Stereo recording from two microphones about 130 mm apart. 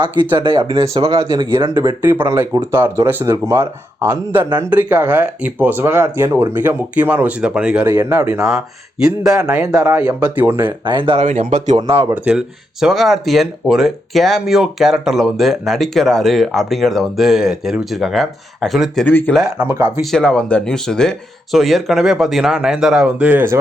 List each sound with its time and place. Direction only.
0.3 s speech: 35° right (ahead or behind)
1.0 s speech: 25° right (ahead or behind)
8.4 s speech: 5° right (ahead or behind)
10.7 s speech: 35° right (ahead or behind)
11.2 s speech: 70° right (ahead or behind)
12.1 s speech: 10° right (ahead or behind)
19.0 s speech: 15° left (ahead or behind)
19.5 s speech: 15° right (ahead or behind)
20.1 s speech: 5° left (ahead or behind); by 23.6 s 15° right (ahead or behind)